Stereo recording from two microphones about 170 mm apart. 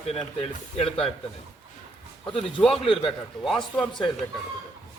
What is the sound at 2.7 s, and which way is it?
Speech, 35° left (ahead or behind).